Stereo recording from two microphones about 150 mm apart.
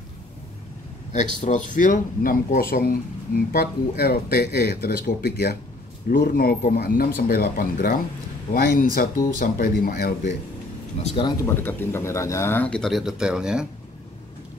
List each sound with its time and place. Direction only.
1.1 s speech: 55° left (ahead or behind); by 8.0 s 70° left (ahead or behind)
8.5 s speech: 85° left
11.0 s speech: 45° left (ahead or behind)
11.4 s speech: 15° left (ahead or behind); by 13.7 s 5° right (ahead or behind)